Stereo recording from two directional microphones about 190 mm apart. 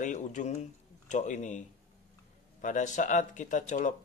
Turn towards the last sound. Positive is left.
turn(degrees=40)  # may be behind; listen again after turning